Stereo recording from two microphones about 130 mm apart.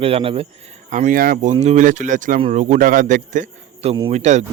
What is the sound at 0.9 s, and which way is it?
Speech, 75° right (ahead or behind).